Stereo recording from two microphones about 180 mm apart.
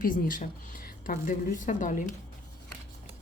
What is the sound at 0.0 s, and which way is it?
Speech, 50° left (ahead or behind).